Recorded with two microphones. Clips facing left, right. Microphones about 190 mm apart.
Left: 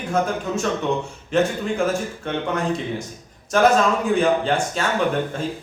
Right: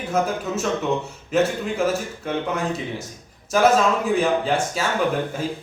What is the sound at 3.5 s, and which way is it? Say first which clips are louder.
Speech: left 1 dB; 5° right (ahead or behind).